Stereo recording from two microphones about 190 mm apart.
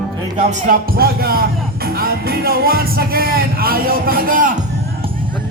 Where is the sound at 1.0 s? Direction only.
50° right (ahead or behind).